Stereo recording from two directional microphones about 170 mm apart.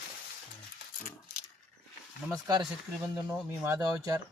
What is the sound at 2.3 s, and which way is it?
Speech, 20° right (ahead or behind).